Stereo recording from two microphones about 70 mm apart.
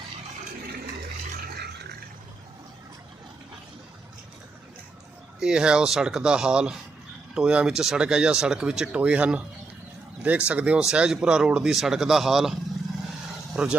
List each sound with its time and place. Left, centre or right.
5.4 s speech: centre
13.5 s speech: centre